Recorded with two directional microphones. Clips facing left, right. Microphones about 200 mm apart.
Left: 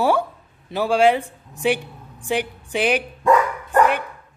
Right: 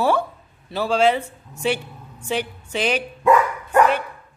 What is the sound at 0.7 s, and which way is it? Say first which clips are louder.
A woman's voice: left 2 dB; 15° left (ahead or behind).